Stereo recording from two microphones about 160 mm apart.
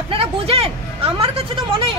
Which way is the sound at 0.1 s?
35° right (ahead or behind).